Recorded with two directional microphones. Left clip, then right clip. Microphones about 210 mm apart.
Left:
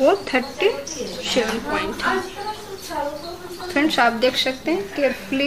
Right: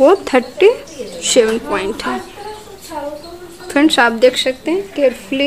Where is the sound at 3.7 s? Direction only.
55° right (ahead or behind).